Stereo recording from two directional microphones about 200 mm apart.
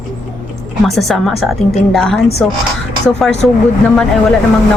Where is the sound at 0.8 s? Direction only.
Centre (ahead or behind).